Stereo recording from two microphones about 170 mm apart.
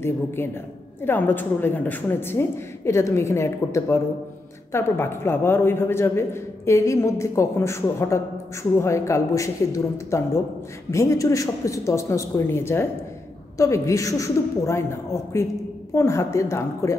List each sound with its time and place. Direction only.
0.4 s a man's voice: 10° left (ahead or behind)